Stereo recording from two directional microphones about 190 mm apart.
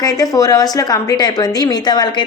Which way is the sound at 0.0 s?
20° left (ahead or behind).